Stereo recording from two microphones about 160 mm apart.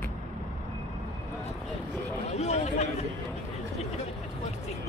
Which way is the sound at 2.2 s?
45° left (ahead or behind).